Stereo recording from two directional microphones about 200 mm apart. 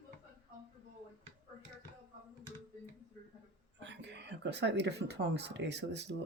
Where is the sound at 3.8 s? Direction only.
65° right (ahead or behind).